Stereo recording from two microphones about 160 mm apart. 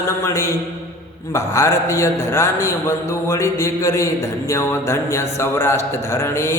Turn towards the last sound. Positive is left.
turn(degrees=15)  # may be behind; listen again after turning